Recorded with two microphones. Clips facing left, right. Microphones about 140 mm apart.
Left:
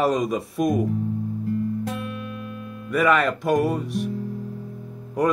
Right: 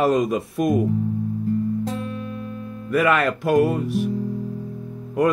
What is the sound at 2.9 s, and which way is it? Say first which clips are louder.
Speech: right 1 dB; centre (ahead or behind).